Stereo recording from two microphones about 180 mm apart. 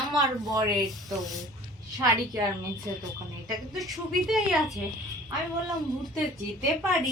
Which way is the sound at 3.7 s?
Centre (ahead or behind).